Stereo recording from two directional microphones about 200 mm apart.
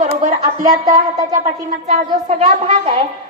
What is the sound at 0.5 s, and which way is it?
Speech, 15° right (ahead or behind).